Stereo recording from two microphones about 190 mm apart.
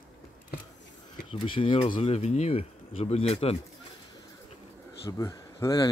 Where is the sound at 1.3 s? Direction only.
30° left (ahead or behind).